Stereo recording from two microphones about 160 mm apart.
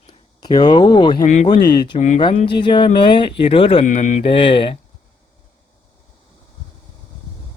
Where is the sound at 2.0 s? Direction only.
50° left (ahead or behind).